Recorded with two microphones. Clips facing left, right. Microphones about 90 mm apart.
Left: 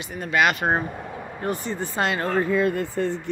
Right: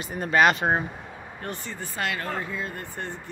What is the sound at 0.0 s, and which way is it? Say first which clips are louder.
Speech: right 1 dB; 40° right (ahead or behind).